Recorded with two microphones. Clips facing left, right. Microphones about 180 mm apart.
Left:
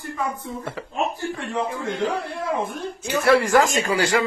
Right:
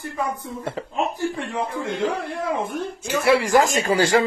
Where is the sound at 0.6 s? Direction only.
25° right (ahead or behind).